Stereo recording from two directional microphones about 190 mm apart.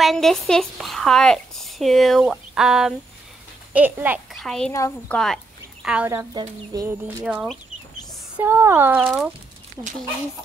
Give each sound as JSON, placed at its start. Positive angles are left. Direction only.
{"t": 0.0, "sound": "a woman's voice", "side_deg": 0}
{"t": 4.4, "sound": "a woman's voice", "side_deg": 5}
{"t": 4.7, "sound": "speech", "side_deg": 15}
{"t": 5.1, "sound": "speech", "side_deg": 0}
{"t": 9.8, "sound": "speech", "side_deg": -20}